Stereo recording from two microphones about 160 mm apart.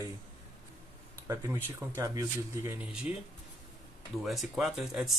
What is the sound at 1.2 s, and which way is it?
Speech, 20° right (ahead or behind).